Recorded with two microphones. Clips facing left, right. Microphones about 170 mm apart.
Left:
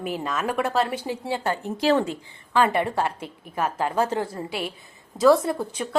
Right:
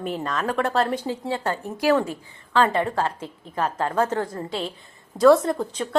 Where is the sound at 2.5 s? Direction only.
15° left (ahead or behind).